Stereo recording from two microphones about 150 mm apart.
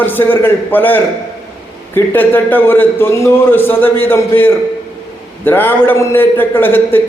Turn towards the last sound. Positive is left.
turn(degrees=15)  # may be behind; listen again after turning